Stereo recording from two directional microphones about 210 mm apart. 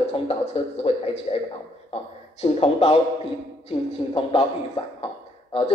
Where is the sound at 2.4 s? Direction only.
30° left (ahead or behind).